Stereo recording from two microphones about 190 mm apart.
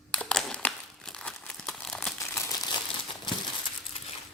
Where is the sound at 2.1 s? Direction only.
15° left (ahead or behind).